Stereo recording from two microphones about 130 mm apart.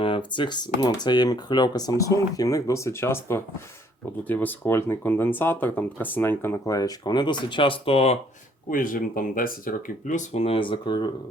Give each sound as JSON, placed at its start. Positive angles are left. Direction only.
{"t": 0.0, "sound": "speech", "side_deg": 40}
{"t": 8.7, "sound": "speech", "side_deg": 90}
{"t": 10.4, "sound": "speech", "side_deg": 45}